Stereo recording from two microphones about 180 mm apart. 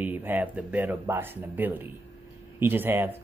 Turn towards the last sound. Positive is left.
turn(degrees=-10)  # may be behind; listen again after turning